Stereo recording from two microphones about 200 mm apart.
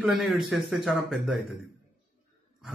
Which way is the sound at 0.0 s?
Centre (ahead or behind).